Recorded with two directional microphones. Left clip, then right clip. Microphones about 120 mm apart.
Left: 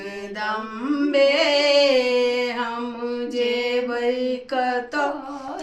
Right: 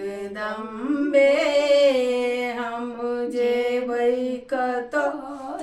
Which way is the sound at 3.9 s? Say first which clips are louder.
Even; 40° right (ahead or behind).